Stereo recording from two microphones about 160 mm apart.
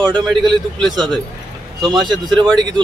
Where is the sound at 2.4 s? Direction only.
25° right (ahead or behind).